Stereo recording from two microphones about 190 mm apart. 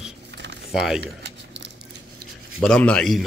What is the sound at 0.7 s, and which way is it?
Speech, 5° right (ahead or behind).